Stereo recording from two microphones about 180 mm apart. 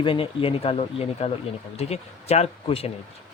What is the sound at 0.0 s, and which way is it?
Speech, 30° left (ahead or behind).